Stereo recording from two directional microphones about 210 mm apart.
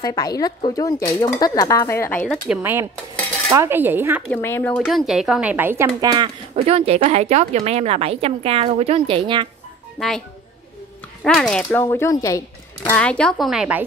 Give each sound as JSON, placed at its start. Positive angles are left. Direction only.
{"t": 0.0, "sound": "speech", "side_deg": 20}
{"t": 2.4, "sound": "speech", "side_deg": -5}
{"t": 4.3, "sound": "speech", "side_deg": 10}
{"t": 5.9, "sound": "speech", "side_deg": -25}
{"t": 9.9, "sound": "speech", "side_deg": 0}
{"t": 11.2, "sound": "speech", "side_deg": 5}